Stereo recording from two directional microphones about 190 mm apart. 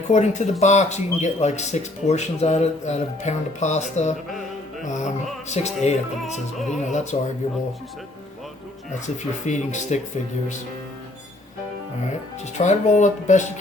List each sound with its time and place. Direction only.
0.1 s speech: 40° left (ahead or behind)
4.8 s music: 40° left (ahead or behind)
5.5 s speech: 35° left (ahead or behind)
9.5 s speech: 40° left (ahead or behind)
12.5 s speech: 40° left (ahead or behind)